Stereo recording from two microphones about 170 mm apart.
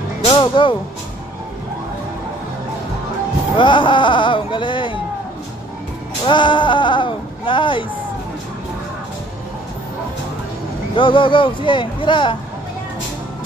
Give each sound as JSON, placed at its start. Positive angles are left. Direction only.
{"t": 0.2, "sound": "music", "side_deg": 30}
{"t": 3.5, "sound": "speech", "side_deg": 30}
{"t": 6.2, "sound": "speech", "side_deg": 30}
{"t": 11.0, "sound": "speech", "side_deg": 30}